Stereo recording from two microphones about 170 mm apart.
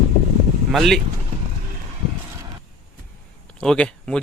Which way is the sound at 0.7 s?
Centre (ahead or behind).